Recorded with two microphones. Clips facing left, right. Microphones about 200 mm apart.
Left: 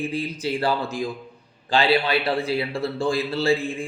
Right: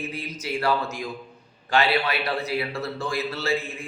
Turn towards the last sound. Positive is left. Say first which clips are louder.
# left 5 dB
turn(degrees=30)  # may be behind; listen again after turning